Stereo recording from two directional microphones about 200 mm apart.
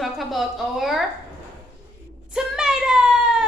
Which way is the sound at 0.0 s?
Centre (ahead or behind).